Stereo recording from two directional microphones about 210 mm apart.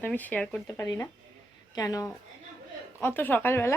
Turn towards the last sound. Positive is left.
turn(degrees=10)  # may be behind; listen again after turning